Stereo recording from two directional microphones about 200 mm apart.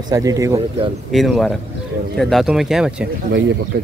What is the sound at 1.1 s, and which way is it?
Speech, centre (ahead or behind).